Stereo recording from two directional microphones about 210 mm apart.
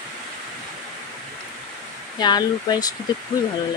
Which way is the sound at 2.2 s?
20° left (ahead or behind).